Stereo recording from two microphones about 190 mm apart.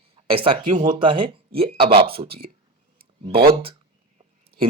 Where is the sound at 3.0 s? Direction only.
25° right (ahead or behind).